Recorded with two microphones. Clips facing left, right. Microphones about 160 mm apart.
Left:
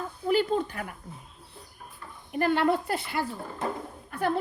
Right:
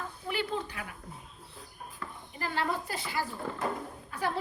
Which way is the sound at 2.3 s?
65° left (ahead or behind).